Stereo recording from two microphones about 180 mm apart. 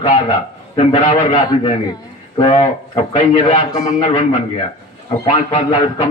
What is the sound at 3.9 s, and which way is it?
Speech, 40° left (ahead or behind).